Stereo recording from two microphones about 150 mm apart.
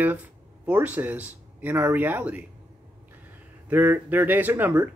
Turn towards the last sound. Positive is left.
turn(degrees=-10)  # may be behind; listen again after turning